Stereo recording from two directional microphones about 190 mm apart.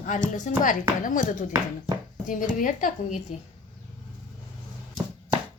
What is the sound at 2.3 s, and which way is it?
Speech, 45° left (ahead or behind).